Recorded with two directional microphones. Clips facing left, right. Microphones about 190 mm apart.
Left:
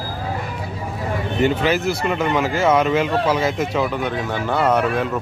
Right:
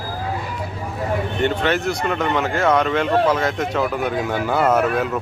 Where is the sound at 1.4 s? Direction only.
5° left (ahead or behind).